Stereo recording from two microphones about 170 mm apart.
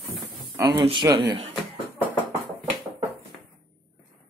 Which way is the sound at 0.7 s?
25° right (ahead or behind).